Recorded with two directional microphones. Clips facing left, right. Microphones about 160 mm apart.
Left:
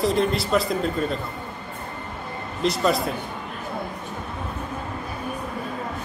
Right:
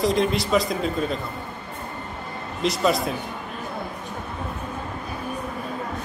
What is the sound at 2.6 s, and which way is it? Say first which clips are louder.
Speech: even; centre (ahead or behind).